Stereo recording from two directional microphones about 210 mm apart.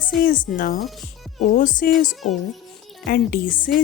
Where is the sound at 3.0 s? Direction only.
45° left (ahead or behind).